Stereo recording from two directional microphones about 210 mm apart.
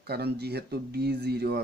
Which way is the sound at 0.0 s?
50° right (ahead or behind).